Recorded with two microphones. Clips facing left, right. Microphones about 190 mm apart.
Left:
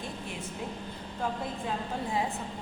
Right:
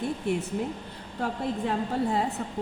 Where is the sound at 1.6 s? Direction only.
60° right (ahead or behind).